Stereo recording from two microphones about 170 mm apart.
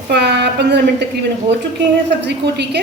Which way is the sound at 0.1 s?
80° right.